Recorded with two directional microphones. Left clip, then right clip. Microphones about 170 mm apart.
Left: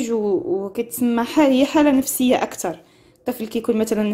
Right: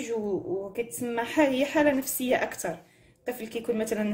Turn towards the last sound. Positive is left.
turn(degrees=30)  # may be behind; listen again after turning